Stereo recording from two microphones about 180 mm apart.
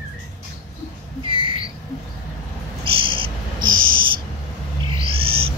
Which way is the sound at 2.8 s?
30° right (ahead or behind).